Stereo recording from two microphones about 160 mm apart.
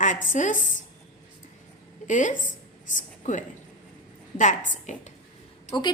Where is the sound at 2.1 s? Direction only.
50° left (ahead or behind).